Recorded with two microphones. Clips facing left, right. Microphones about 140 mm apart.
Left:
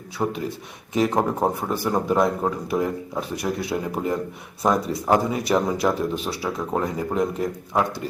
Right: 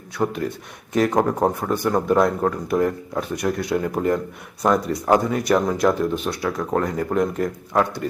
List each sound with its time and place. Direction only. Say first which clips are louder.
0.2 s speech: right 2 dB; centre (ahead or behind)